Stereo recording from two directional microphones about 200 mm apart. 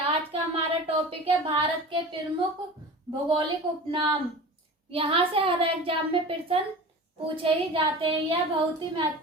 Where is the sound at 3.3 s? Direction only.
25° right (ahead or behind).